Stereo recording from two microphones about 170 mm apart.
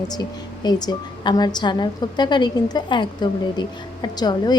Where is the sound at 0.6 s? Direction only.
25° left (ahead or behind).